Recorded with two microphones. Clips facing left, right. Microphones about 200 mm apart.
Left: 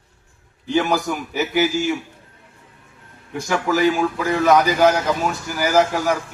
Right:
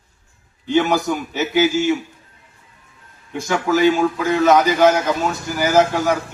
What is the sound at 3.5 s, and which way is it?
A man's voice, 20° right (ahead or behind).